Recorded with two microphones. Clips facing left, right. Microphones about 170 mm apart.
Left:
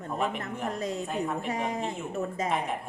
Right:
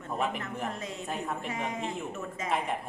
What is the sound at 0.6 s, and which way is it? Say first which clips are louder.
A woman's voice: left 4 dB; 40° left (ahead or behind).